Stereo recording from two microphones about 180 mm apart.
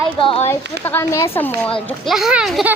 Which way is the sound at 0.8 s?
15° left (ahead or behind).